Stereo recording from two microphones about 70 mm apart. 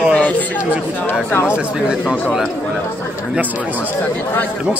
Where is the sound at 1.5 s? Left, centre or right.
Centre.